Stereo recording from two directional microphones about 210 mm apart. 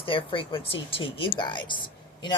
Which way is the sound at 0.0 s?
25° left (ahead or behind).